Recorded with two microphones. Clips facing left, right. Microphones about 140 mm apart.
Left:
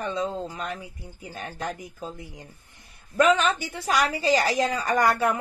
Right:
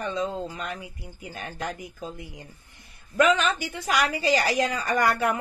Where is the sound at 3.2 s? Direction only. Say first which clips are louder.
Left 1 dB; 35° left (ahead or behind).